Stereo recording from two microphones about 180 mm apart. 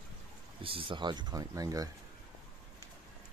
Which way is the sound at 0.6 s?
30° right (ahead or behind).